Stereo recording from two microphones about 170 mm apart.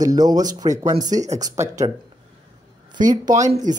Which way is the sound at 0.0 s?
20° right (ahead or behind).